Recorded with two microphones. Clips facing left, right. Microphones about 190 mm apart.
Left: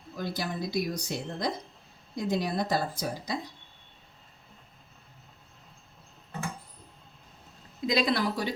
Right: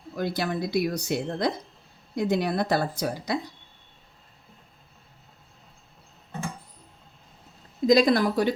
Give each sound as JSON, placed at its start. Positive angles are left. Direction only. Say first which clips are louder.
{"t": 0.2, "sound": "speech", "louder": "right 5 dB", "side_deg": -65}
{"t": 7.9, "sound": "a woman's voice", "louder": "right 7 dB", "side_deg": -45}